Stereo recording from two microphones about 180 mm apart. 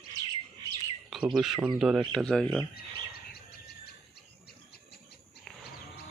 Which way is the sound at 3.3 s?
60° left (ahead or behind).